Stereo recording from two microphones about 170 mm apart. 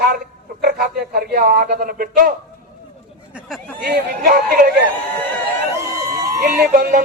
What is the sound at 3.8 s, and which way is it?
Speech, 60° right (ahead or behind).